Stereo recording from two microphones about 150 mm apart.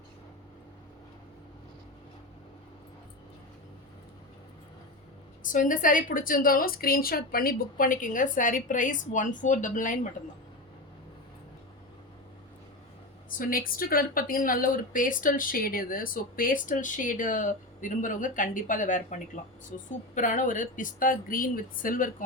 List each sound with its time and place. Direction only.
5.4 s a woman's voice: 60° left (ahead or behind)
13.4 s a woman's voice: 70° left (ahead or behind)